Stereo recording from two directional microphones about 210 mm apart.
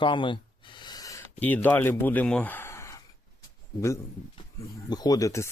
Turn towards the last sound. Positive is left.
turn(degrees=15)  # may be behind; listen again after turning